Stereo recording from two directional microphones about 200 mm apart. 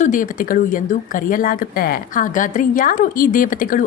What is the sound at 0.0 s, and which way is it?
A woman's voice, 40° left (ahead or behind).